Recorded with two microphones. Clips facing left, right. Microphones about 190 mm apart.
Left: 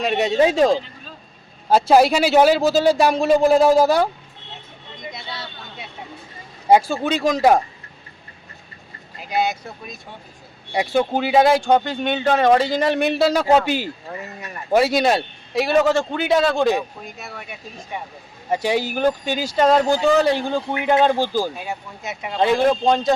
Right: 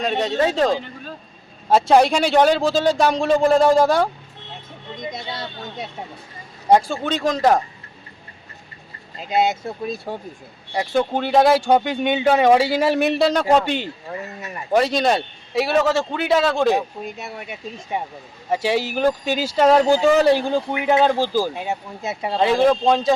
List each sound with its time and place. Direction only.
0.0 s speech: 10° left (ahead or behind)
5.1 s a sound: 40° right (ahead or behind)
6.7 s speech: 5° left (ahead or behind)
9.1 s speech: 25° right (ahead or behind)
10.7 s speech: 10° left (ahead or behind)
17.2 s speech: 25° right (ahead or behind)
18.5 s speech: 5° right (ahead or behind)
21.5 s speech: 25° right (ahead or behind)
22.4 s speech: centre (ahead or behind)